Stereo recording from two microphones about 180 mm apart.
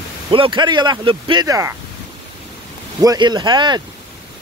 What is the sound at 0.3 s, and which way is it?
Speech, 30° right (ahead or behind).